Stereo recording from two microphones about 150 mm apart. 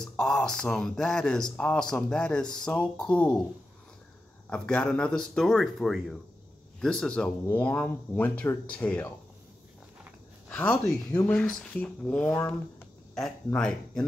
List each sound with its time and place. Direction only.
0.0 s speech: 5° left (ahead or behind)
4.5 s speech: 5° left (ahead or behind)
10.5 s speech: 5° left (ahead or behind)
13.5 s speech: 5° left (ahead or behind)